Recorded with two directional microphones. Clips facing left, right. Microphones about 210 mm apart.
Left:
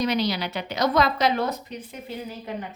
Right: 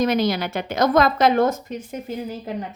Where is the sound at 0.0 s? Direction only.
50° right (ahead or behind).